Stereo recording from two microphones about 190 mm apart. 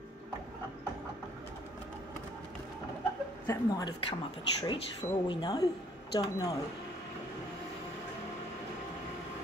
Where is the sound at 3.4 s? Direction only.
15° left (ahead or behind).